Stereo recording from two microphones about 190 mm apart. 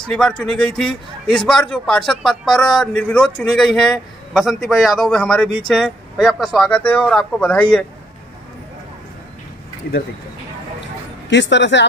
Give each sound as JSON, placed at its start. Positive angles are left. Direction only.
{"t": 0.0, "sound": "a man's voice", "side_deg": 5}
{"t": 11.2, "sound": "speech", "side_deg": 70}